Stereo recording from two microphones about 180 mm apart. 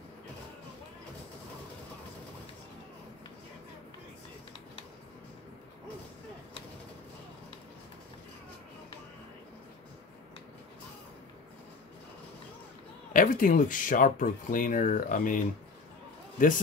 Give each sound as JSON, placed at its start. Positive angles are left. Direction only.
{"t": 13.1, "sound": "speech", "side_deg": 50}